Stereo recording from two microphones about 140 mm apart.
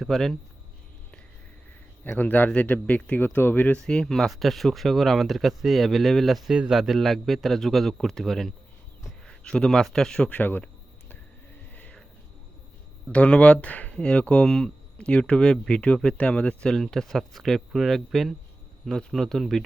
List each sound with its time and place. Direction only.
0.0 s speech: centre (ahead or behind)
2.0 s speech: 10° left (ahead or behind)
11.7 s a sound: 10° left (ahead or behind)
13.1 s speech: 10° left (ahead or behind)